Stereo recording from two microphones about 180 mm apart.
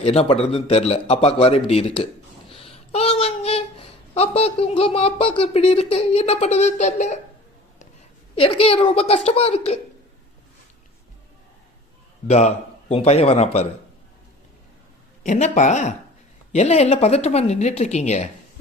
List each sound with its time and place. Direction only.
0.0 s a man's voice: 35° left (ahead or behind)
8.4 s a man's voice: 30° left (ahead or behind)
12.3 s a man's voice: 40° left (ahead or behind)
15.2 s a man's voice: 40° left (ahead or behind)